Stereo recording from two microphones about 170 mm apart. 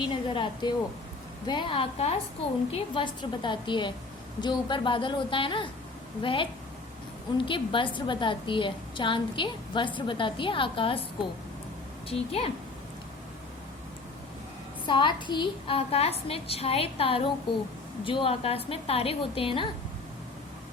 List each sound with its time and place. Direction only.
0.1 s a woman's voice: 30° left (ahead or behind)
12.0 s a woman's voice: 35° left (ahead or behind)
14.8 s a woman's voice: 25° left (ahead or behind)